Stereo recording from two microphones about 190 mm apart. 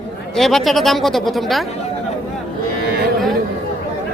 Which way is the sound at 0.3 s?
Centre (ahead or behind).